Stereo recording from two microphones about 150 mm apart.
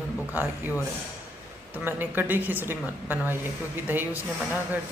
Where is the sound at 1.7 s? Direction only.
15° right (ahead or behind).